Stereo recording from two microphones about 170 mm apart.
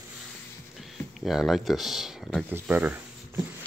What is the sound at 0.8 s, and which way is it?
Speech, centre (ahead or behind).